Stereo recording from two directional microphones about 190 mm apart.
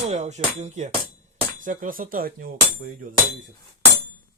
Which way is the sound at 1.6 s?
45° right (ahead or behind).